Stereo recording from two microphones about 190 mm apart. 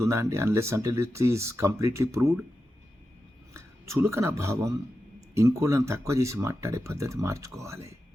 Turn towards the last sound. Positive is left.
turn(degrees=-15)  # may be behind; listen again after turning